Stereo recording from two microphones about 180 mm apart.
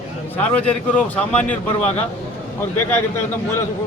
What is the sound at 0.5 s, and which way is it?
Speech, 5° left (ahead or behind).